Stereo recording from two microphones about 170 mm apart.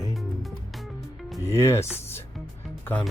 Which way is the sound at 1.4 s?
15° left (ahead or behind).